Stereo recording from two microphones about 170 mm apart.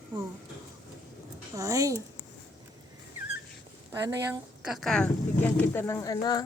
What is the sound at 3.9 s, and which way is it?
Speech, 15° right (ahead or behind).